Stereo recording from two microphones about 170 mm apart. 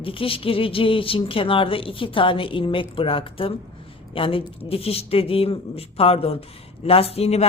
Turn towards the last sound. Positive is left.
turn(degrees=40)  # may be behind; listen again after turning